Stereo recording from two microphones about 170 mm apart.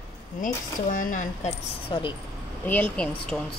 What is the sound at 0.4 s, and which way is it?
Speech, 50° left (ahead or behind).